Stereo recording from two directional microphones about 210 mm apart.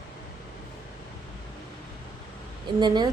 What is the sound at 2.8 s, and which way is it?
Speech, 20° right (ahead or behind).